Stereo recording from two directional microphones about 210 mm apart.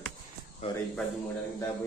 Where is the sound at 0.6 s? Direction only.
30° left (ahead or behind).